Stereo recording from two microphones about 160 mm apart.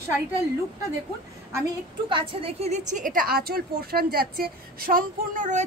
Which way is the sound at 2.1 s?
35° right (ahead or behind).